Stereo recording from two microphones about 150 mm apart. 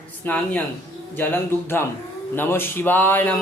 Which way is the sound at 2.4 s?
15° left (ahead or behind).